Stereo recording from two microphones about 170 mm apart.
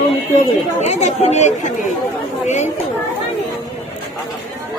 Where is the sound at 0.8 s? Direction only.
45° left (ahead or behind).